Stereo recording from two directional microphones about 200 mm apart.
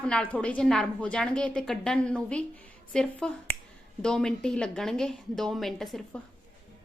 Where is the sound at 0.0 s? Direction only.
5° left (ahead or behind).